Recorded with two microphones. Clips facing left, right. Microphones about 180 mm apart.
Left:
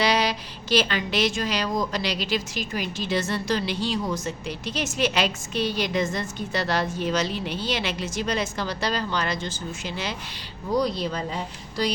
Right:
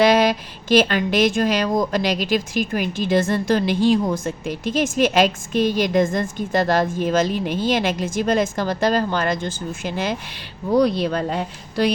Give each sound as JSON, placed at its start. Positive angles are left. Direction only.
{"t": 0.0, "sound": "a woman's voice", "side_deg": -50}